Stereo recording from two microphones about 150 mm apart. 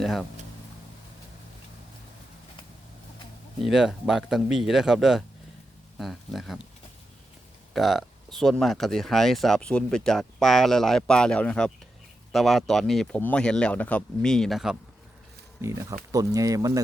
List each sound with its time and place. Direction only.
0.0 s speech: centre (ahead or behind)
3.6 s speech: centre (ahead or behind)
7.7 s speech: centre (ahead or behind)
15.6 s speech: 20° right (ahead or behind)